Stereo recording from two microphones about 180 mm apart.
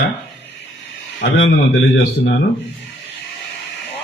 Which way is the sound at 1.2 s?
75° left (ahead or behind).